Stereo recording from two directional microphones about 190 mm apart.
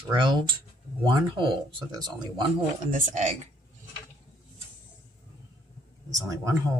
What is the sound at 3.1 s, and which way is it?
Speech, 40° right (ahead or behind).